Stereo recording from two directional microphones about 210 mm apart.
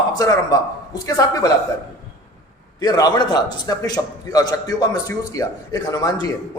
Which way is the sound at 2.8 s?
20° left (ahead or behind).